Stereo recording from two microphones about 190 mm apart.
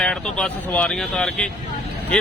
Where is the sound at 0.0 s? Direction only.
5° left (ahead or behind).